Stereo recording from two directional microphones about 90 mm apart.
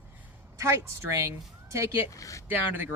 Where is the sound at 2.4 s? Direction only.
20° right (ahead or behind).